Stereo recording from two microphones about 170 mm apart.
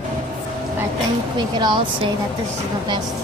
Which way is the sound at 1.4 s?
25° right (ahead or behind).